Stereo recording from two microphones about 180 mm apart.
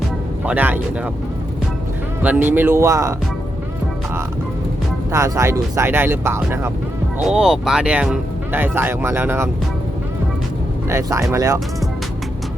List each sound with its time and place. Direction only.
0.4 s speech: 10° right (ahead or behind)
2.2 s speech: 10° right (ahead or behind)
5.1 s speech: 15° right (ahead or behind)
7.3 s speech: 5° right (ahead or behind)
10.8 s speech: 15° right (ahead or behind)